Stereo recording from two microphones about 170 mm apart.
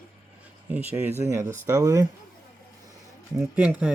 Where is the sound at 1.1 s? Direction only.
40° right (ahead or behind).